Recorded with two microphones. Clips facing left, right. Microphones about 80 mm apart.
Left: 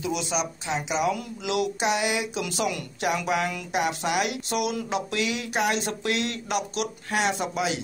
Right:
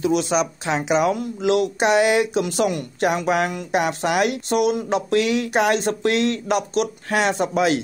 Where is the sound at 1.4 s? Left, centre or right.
Right.